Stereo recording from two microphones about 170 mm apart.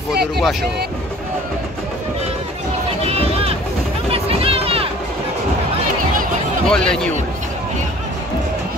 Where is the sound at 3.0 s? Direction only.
35° right (ahead or behind).